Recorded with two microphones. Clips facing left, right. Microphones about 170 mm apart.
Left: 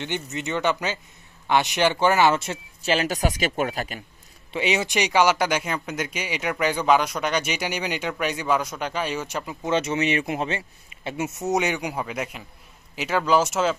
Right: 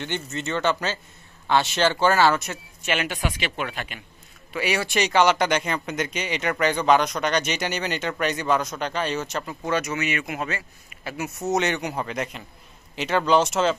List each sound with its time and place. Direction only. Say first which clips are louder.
0.0 s speech: even; 15° left (ahead or behind); by 4.0 s 40° left (ahead or behind)
4.5 s speech: left 1 dB; 20° left (ahead or behind)
9.7 s speech: left 3 dB; 30° left (ahead or behind); by 13.7 s 5° left (ahead or behind)